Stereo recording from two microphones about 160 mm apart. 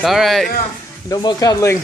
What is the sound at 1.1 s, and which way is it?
Speech, 25° left (ahead or behind).